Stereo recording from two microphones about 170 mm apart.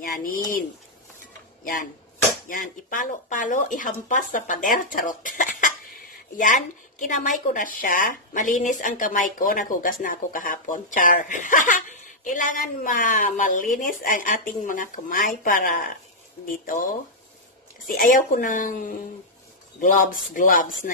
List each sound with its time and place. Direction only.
0.0 s speech: 55° left (ahead or behind)
1.6 s speech: 55° left (ahead or behind)
17.8 s speech: 55° left (ahead or behind)